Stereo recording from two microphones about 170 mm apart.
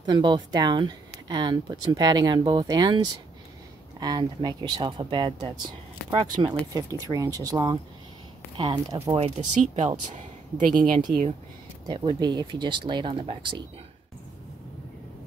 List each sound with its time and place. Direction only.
0.0 s speech: 25° right (ahead or behind)
9.1 s speech: 40° right (ahead or behind)
11.9 s speech: 25° right (ahead or behind)